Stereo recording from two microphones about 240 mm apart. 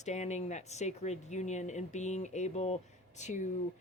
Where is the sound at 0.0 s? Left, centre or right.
Left.